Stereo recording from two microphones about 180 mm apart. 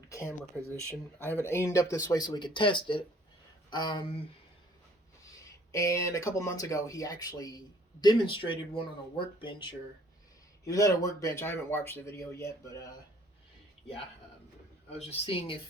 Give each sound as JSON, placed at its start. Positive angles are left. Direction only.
{"t": 0.1, "sound": "a sound", "side_deg": 15}
{"t": 0.7, "sound": "speech", "side_deg": -15}
{"t": 1.5, "sound": "speech", "side_deg": 15}
{"t": 5.7, "sound": "speech", "side_deg": 15}
{"t": 14.9, "sound": "speech", "side_deg": 35}